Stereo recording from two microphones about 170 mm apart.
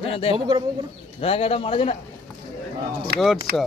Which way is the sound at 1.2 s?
35° left (ahead or behind).